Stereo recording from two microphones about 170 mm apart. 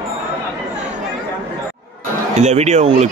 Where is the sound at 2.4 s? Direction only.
40° right (ahead or behind).